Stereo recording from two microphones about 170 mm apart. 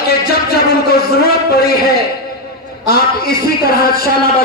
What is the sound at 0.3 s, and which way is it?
Speech, 65° left (ahead or behind).